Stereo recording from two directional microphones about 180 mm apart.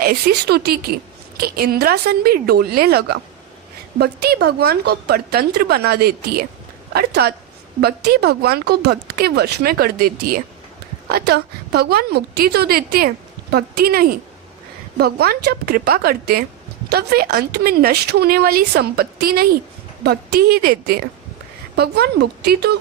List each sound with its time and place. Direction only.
0.0 s speech: 55° right (ahead or behind)